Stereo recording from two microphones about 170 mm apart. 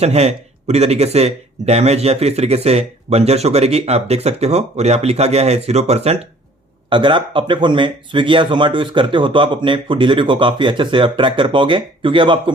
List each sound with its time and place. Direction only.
0.0 s speech: 40° right (ahead or behind)